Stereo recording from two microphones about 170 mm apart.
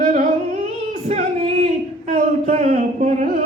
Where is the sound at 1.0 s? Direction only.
40° right (ahead or behind).